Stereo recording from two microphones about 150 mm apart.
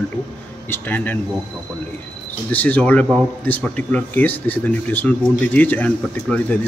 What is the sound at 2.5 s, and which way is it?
Speech, 10° left (ahead or behind).